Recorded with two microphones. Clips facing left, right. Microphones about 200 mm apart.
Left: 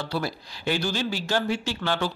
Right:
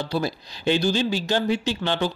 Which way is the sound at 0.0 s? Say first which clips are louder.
Right 3 dB; 20° right (ahead or behind).